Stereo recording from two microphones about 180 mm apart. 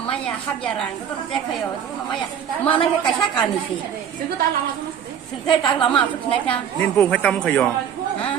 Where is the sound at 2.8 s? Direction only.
25° left (ahead or behind).